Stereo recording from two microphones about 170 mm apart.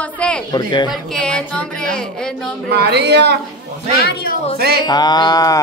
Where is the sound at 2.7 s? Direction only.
75° right (ahead or behind).